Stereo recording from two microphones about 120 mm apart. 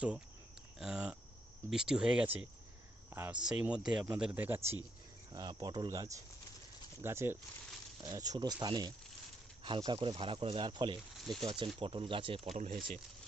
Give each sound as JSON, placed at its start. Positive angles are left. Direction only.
{"t": 0.8, "sound": "speech", "side_deg": -5}
{"t": 5.3, "sound": "speech", "side_deg": -35}
{"t": 8.0, "sound": "speech", "side_deg": -30}
{"t": 11.2, "sound": "speech", "side_deg": 0}
{"t": 11.4, "sound": "speech", "side_deg": -40}
{"t": 12.5, "sound": "speech", "side_deg": -70}